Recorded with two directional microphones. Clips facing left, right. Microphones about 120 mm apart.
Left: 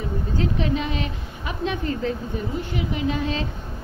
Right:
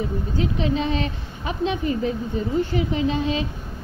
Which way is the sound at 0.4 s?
25° right (ahead or behind).